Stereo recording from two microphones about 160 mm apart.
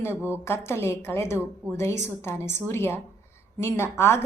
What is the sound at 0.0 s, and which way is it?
A woman's voice, 15° left (ahead or behind).